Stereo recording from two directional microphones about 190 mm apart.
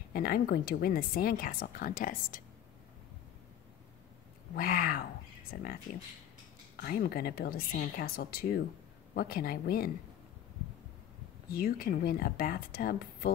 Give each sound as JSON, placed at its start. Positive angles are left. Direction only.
{"t": 0.1, "sound": "speech", "side_deg": 50}
{"t": 4.6, "sound": "speech", "side_deg": 50}
{"t": 6.8, "sound": "speech", "side_deg": 50}
{"t": 11.5, "sound": "speech", "side_deg": 50}